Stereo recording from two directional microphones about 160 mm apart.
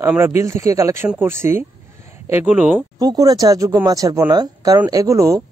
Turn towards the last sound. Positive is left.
turn(degrees=-20)  # may be behind; listen again after turning